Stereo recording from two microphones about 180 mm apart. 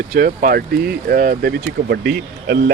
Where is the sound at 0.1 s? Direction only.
55° right (ahead or behind).